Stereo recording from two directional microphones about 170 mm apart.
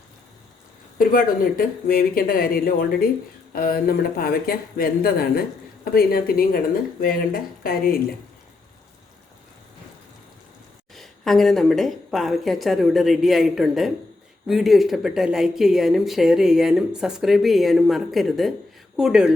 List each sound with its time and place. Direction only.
0.9 s speech: 55° left (ahead or behind)
10.9 s speech: centre (ahead or behind)